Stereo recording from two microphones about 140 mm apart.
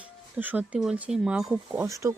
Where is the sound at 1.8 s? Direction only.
20° right (ahead or behind).